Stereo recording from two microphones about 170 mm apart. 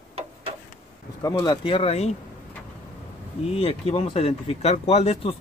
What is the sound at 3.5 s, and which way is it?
Speech, 35° left (ahead or behind).